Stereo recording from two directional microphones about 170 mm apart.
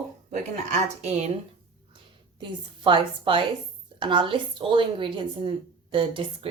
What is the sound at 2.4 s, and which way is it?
A woman's voice, 30° right (ahead or behind).